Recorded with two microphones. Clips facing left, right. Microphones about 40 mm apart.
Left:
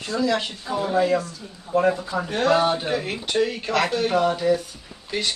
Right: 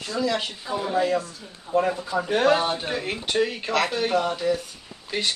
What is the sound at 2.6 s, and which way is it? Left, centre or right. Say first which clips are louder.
Speech: left 4 dB; centre.